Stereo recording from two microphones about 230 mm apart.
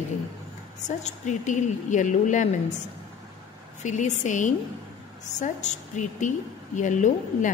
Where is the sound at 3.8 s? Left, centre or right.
Left.